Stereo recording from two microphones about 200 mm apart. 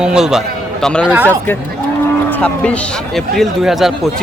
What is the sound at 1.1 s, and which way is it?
Speech, 10° right (ahead or behind).